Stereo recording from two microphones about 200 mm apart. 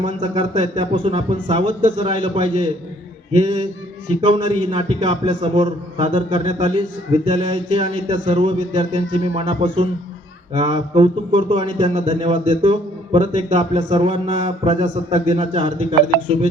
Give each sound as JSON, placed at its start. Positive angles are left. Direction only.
{"t": 0.0, "sound": "speech", "side_deg": -25}